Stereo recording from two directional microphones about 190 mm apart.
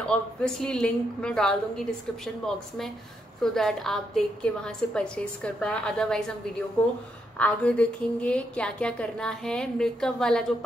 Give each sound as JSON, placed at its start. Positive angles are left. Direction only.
{"t": 0.1, "sound": "a woman's voice", "side_deg": 5}
{"t": 7.3, "sound": "a woman's voice", "side_deg": 5}